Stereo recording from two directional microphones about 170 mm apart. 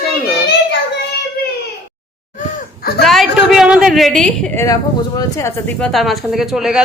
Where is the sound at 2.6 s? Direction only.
60° left (ahead or behind).